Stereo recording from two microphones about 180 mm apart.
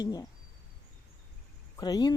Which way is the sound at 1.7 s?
25° left (ahead or behind).